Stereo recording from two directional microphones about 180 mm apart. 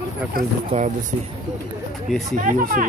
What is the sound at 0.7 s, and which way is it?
Speech, 40° right (ahead or behind).